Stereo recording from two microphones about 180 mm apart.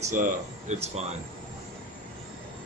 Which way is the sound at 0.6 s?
40° right (ahead or behind).